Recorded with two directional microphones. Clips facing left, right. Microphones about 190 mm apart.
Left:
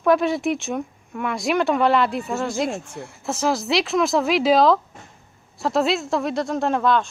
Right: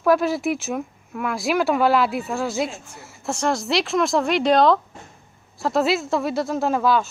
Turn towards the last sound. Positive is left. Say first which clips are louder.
# even
turn(degrees=-5)  # may be behind; listen again after turning